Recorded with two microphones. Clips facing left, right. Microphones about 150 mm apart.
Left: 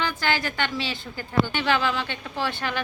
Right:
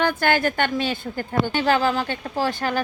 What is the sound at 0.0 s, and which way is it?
A woman's voice, 55° right (ahead or behind).